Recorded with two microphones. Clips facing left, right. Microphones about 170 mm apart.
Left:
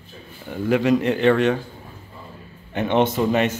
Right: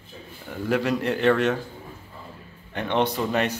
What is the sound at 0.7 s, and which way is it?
Speech, centre (ahead or behind).